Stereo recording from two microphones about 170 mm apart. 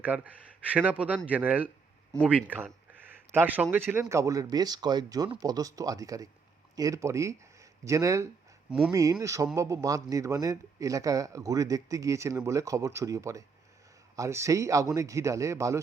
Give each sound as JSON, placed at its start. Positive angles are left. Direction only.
{"t": 0.0, "sound": "speech", "side_deg": -10}